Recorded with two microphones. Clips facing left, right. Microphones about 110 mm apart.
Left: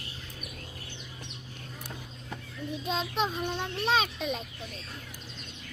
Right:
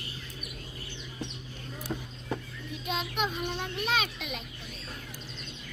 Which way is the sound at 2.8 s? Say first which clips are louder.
Left 1 dB; 30° left (ahead or behind).